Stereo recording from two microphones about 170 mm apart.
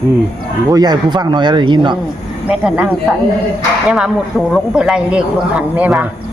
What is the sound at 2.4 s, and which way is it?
Speech, 5° right (ahead or behind).